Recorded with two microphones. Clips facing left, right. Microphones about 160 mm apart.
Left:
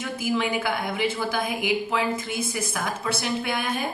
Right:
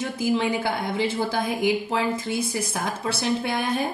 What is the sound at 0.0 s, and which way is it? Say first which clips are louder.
A woman's voice: right 2 dB; 30° right (ahead or behind).